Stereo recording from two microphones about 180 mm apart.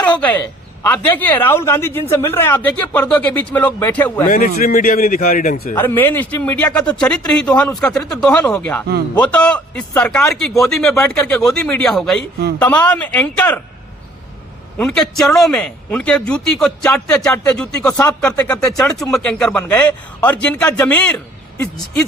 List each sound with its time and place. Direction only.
0.0 s speech: 10° left (ahead or behind)
4.3 s a man's voice: 50° left (ahead or behind)
5.7 s a man's voice: 10° left (ahead or behind)
14.8 s a man's voice: 5° left (ahead or behind)
17.8 s a man's voice: 20° left (ahead or behind)